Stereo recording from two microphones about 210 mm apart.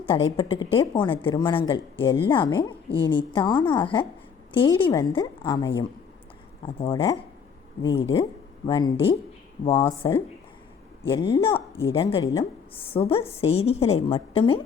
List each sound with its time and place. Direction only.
0.0 s speech: 20° left (ahead or behind)
11.3 s speech: 25° left (ahead or behind)
12.9 s speech: 25° left (ahead or behind)